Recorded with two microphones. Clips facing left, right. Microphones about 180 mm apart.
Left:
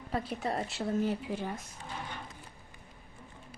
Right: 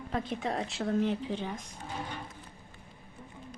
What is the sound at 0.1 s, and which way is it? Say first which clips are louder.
Speech: even; 5° left (ahead or behind).